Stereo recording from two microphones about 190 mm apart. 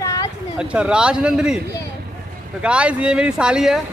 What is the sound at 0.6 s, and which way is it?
Speech, 5° right (ahead or behind).